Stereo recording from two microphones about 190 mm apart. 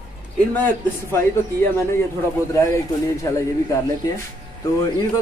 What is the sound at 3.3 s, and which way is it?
Speech, 15° left (ahead or behind).